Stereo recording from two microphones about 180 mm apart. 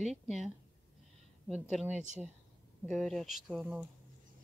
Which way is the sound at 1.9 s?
40° right (ahead or behind).